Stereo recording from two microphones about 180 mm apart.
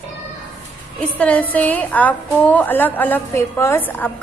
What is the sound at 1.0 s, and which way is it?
A woman's voice, 5° left (ahead or behind).